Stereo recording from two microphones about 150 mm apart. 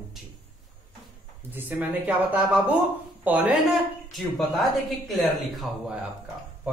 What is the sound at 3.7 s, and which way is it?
Speech, centre (ahead or behind).